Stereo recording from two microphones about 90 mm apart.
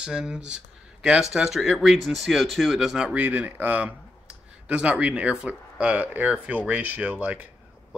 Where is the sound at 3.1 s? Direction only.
20° right (ahead or behind).